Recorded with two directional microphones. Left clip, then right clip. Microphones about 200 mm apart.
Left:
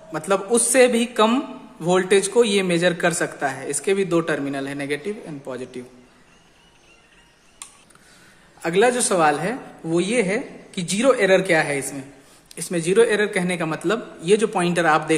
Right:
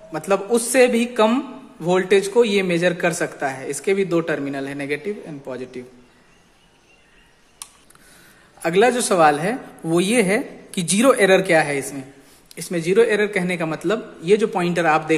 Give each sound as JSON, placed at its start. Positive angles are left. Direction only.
{"t": 0.1, "sound": "a woman's voice", "side_deg": -10}
{"t": 8.5, "sound": "a woman's voice", "side_deg": -20}